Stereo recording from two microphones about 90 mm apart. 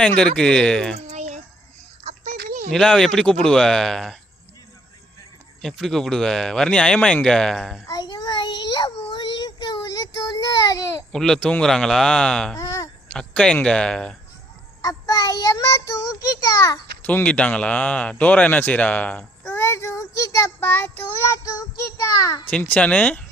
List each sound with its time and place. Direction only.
0.0 s a man's voice: 10° left (ahead or behind)
2.6 s speech: 5° left (ahead or behind)
5.6 s speech: 5° left (ahead or behind)
7.9 s child singing: 45° left (ahead or behind)
11.1 s a man's voice: 5° left (ahead or behind)
12.5 s a sound: 35° left (ahead or behind)
13.1 s a man's voice: 10° left (ahead or behind)
14.8 s child singing: 45° left (ahead or behind)
17.0 s a man's voice: 20° left (ahead or behind)
19.5 s child singing: 30° left (ahead or behind)
20.6 s child singing: 25° left (ahead or behind)
21.2 s child singing: 35° left (ahead or behind)
22.4 s a man's voice: 15° left (ahead or behind)